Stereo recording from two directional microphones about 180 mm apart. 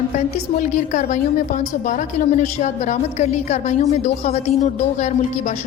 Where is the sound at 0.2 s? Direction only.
45° left (ahead or behind).